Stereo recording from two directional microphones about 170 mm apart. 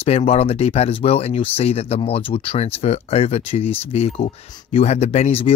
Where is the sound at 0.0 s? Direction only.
35° left (ahead or behind).